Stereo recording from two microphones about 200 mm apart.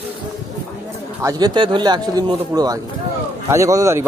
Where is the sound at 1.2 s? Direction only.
20° right (ahead or behind).